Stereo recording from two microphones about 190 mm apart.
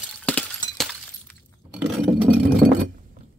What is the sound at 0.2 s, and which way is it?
Breaking, 5° left (ahead or behind).